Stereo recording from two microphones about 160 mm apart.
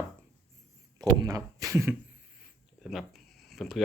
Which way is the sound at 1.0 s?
20° right (ahead or behind).